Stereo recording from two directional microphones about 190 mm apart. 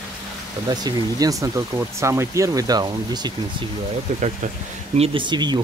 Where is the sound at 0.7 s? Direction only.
20° right (ahead or behind).